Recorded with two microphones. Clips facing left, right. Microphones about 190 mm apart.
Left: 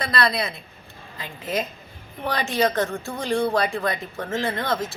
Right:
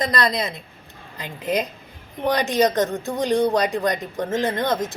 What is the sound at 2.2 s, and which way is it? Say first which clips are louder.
Speech: right 4 dB; 20° right (ahead or behind).